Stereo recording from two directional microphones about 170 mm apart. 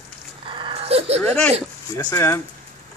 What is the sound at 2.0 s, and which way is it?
Speech, 20° left (ahead or behind).